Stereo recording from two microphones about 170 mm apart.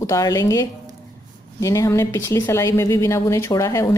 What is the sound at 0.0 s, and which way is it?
A woman's voice, 20° left (ahead or behind).